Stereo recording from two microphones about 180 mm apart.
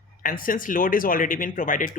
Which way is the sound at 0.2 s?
50° left (ahead or behind).